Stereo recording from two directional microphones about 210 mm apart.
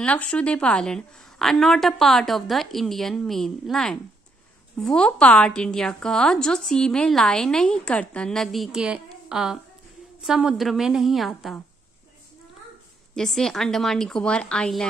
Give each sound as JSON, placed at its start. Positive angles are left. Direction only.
{"t": 0.0, "sound": "a woman's voice", "side_deg": 5}
{"t": 13.1, "sound": "a woman's voice", "side_deg": 0}